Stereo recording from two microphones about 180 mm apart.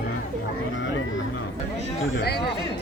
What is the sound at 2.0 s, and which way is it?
Speech, 75° left (ahead or behind).